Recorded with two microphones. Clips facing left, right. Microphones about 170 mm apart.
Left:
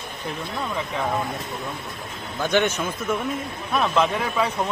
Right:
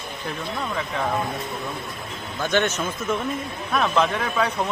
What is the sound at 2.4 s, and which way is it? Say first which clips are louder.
A man's voice: left 1 dB; 15° left (ahead or behind).